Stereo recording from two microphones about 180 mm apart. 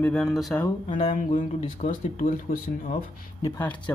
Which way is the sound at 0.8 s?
30° left (ahead or behind).